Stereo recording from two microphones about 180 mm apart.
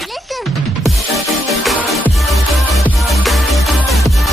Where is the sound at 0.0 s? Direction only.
Centre (ahead or behind).